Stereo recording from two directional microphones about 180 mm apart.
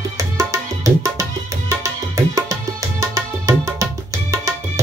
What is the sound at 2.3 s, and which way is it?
Music, 15° right (ahead or behind).